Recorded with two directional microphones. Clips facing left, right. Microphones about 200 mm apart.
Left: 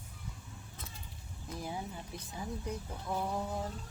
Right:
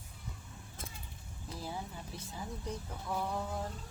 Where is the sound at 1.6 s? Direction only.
15° left (ahead or behind).